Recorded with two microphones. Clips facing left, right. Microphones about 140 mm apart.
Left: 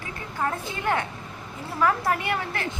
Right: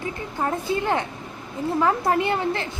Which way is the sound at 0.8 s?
25° right (ahead or behind).